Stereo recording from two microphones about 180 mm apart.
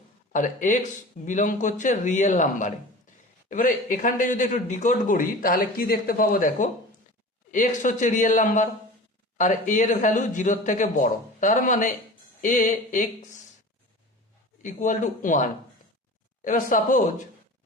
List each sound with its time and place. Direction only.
0.3 s speech: 45° left (ahead or behind)
14.6 s speech: 45° left (ahead or behind)